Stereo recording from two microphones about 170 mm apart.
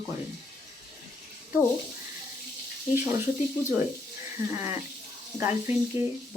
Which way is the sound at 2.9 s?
15° right (ahead or behind).